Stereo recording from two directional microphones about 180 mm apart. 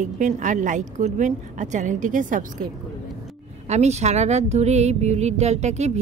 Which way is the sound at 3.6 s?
40° right (ahead or behind).